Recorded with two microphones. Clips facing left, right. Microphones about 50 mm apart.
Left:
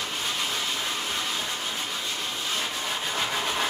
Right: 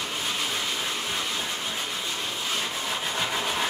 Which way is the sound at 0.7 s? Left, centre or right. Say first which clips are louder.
Even; centre.